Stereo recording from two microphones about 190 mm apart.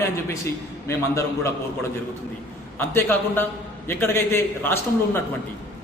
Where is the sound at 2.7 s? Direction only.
10° left (ahead or behind).